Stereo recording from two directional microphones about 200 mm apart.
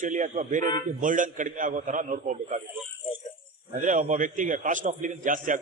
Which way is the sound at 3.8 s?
40° right (ahead or behind).